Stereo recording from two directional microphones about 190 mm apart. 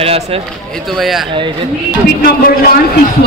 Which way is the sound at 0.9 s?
Centre (ahead or behind).